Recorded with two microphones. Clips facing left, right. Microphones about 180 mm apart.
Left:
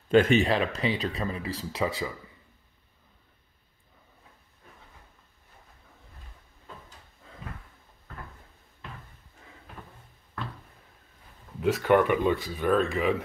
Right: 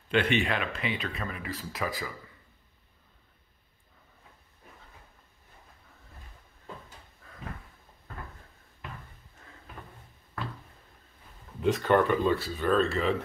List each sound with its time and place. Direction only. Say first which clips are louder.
0.1 s speech: left 6 dB; 40° left (ahead or behind); by 2.1 s 25° left (ahead or behind)
11.6 s speech: left 2 dB; 10° left (ahead or behind)